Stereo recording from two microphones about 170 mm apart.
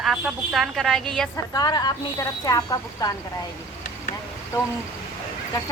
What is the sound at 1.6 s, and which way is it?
Speech, 25° left (ahead or behind).